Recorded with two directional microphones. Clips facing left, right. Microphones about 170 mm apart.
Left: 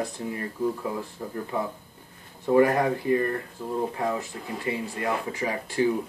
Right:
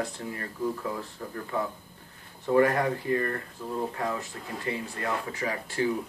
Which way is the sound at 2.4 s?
15° left (ahead or behind).